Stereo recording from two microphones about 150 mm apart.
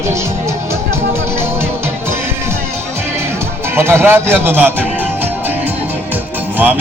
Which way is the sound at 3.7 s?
15° right (ahead or behind).